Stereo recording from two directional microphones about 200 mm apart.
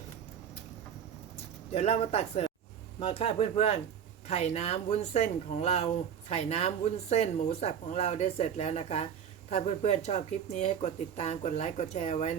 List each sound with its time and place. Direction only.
1.7 s speech: 30° left (ahead or behind)